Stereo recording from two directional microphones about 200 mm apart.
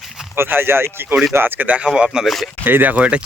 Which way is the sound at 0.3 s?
10° right (ahead or behind).